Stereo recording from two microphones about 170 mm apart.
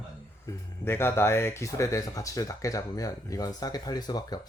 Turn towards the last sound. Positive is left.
turn(degrees=25)  # may be behind; listen again after turning